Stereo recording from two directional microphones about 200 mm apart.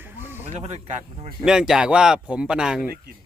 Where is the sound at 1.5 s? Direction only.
5° right (ahead or behind).